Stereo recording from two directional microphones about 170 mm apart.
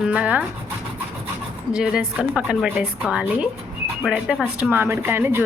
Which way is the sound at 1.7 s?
5° right (ahead or behind).